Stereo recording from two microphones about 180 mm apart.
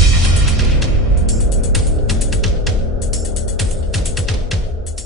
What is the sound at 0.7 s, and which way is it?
Music, centre (ahead or behind).